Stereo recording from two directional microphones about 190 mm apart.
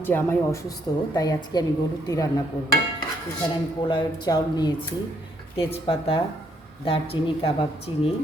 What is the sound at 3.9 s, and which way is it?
Speech, 25° left (ahead or behind).